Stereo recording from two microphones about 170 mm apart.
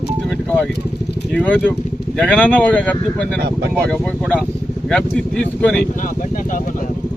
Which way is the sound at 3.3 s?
75° right (ahead or behind).